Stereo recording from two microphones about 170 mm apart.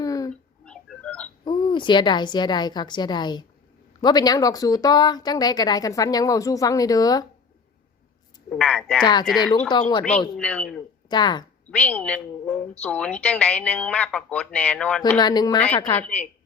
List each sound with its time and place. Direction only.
0.0 s a sound: 20° left (ahead or behind)
0.3 s a sound: 5° left (ahead or behind)
1.5 s speech: 30° left (ahead or behind)
8.4 s a woman's voice: 5° left (ahead or behind)
11.1 s speech: 25° left (ahead or behind)
11.7 s a woman's voice: 10° left (ahead or behind)
15.2 s speech: 25° left (ahead or behind)
16.0 s speech: 5° left (ahead or behind)